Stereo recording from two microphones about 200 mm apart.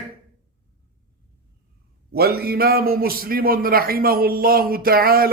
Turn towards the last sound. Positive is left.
turn(degrees=-45)  # may be behind; listen again after turning